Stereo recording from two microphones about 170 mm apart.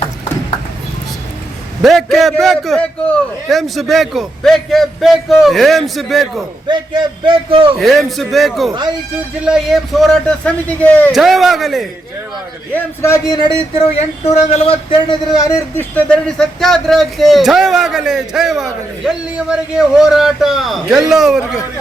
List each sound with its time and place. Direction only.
1.8 s speech: centre (ahead or behind)
6.7 s a man's voice: 30° right (ahead or behind)
7.8 s a man's voice: centre (ahead or behind)
11.1 s speech: centre (ahead or behind)
12.7 s a man's voice: 15° left (ahead or behind)
14.3 s speech: 35° left (ahead or behind)
15.7 s speech: 10° left (ahead or behind)